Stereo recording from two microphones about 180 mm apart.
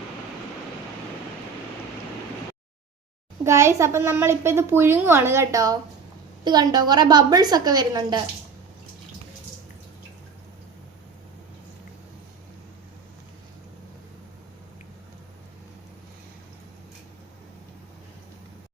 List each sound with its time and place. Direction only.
3.4 s a woman's voice: 15° right (ahead or behind)